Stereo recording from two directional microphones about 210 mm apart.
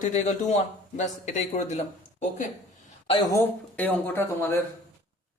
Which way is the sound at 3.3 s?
10° left (ahead or behind).